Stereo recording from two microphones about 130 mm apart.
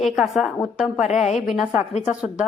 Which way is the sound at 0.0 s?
Centre (ahead or behind).